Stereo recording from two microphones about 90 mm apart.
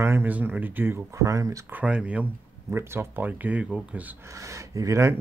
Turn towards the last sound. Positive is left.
turn(degrees=-35)  # may be behind; listen again after turning